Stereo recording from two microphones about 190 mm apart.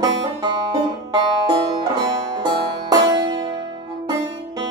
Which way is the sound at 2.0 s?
20° right (ahead or behind).